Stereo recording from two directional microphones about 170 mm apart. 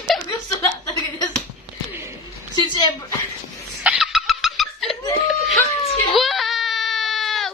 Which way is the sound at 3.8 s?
5° right (ahead or behind).